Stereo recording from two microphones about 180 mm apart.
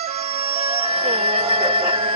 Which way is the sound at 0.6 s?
35° right (ahead or behind).